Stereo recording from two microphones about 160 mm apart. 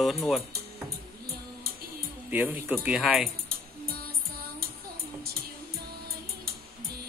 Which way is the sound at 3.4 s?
70° right (ahead or behind).